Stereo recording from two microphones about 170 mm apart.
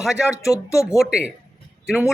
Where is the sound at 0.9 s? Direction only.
5° right (ahead or behind).